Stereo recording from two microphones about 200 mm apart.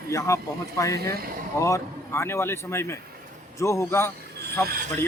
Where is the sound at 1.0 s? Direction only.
50° right (ahead or behind).